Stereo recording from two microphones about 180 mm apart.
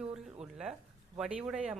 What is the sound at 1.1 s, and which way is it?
Speech, 5° right (ahead or behind).